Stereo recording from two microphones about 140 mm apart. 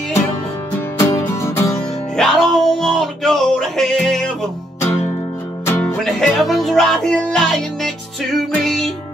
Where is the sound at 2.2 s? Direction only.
Centre (ahead or behind).